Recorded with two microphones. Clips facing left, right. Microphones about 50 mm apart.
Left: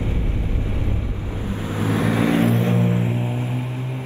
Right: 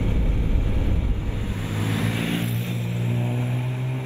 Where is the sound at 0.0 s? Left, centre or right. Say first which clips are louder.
Left 1 dB; left.